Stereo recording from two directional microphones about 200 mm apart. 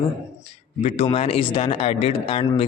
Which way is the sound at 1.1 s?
30° left (ahead or behind).